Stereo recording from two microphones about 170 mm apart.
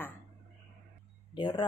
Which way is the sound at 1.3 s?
30° left (ahead or behind).